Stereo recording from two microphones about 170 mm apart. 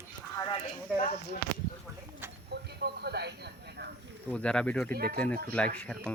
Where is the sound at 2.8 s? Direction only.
70° right (ahead or behind).